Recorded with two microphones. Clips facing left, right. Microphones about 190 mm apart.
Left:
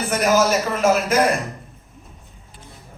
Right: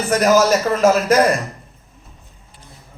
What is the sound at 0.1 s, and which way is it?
Speech, 40° right (ahead or behind).